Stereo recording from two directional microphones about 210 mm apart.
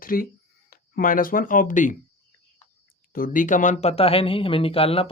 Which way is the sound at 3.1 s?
40° left (ahead or behind).